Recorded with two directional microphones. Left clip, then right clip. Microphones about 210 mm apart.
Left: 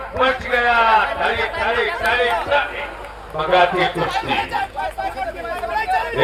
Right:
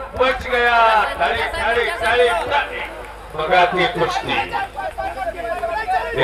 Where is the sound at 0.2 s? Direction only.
20° right (ahead or behind).